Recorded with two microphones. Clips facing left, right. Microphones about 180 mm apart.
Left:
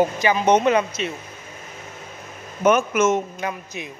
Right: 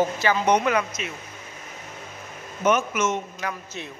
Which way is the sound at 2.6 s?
50° left (ahead or behind).